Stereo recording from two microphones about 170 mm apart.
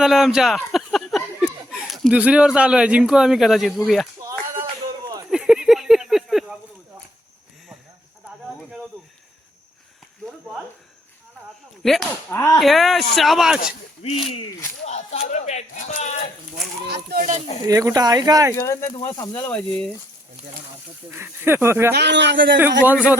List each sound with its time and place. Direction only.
0.0 s speech: centre (ahead or behind)
4.2 s a sound: 20° right (ahead or behind)
5.3 s a sound: 5° right (ahead or behind)
11.8 s speech: centre (ahead or behind)
12.3 s speech: 15° left (ahead or behind)
12.5 s speech: centre (ahead or behind)
14.0 s speech: 35° left (ahead or behind)
16.8 s speech: 70° right (ahead or behind)
17.7 s speech: 20° right (ahead or behind)
18.5 s speech: 15° left (ahead or behind)
21.2 s speech: 15° right (ahead or behind)
21.9 s a man's voice: 85° right